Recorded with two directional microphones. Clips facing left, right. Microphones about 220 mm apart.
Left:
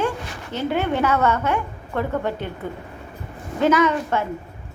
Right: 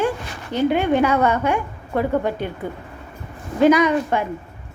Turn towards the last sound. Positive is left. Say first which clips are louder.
# right 2 dB
turn(degrees=-15)  # may be behind; listen again after turning